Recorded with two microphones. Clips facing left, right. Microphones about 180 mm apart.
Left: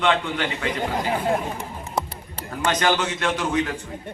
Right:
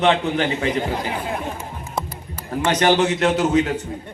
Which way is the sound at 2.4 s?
30° right (ahead or behind).